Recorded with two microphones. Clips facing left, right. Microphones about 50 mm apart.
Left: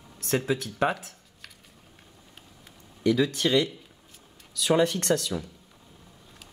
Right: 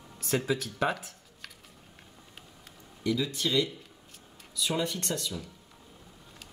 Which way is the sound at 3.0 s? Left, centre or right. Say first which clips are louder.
Left 6 dB; left.